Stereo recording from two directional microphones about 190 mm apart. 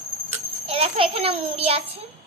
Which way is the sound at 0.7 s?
30° right (ahead or behind).